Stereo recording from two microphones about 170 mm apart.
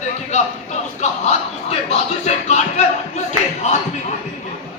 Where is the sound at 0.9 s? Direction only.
40° left (ahead or behind).